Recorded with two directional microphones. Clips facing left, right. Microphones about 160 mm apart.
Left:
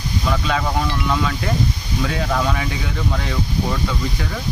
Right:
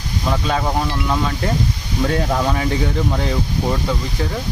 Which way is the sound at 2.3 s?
25° right (ahead or behind).